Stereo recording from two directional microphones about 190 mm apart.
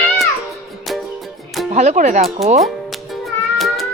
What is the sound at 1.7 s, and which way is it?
Speech, 40° right (ahead or behind).